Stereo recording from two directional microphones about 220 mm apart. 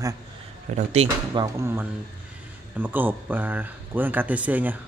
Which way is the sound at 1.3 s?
15° right (ahead or behind).